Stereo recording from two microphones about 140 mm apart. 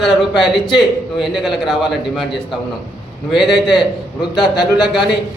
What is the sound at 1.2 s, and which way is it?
Speech, centre (ahead or behind).